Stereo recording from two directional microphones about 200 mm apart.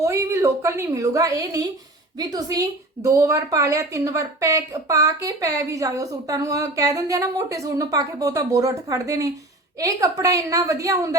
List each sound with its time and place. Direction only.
0.0 s a woman's voice: 15° right (ahead or behind)